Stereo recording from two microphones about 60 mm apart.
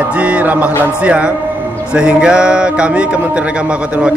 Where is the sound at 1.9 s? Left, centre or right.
Centre.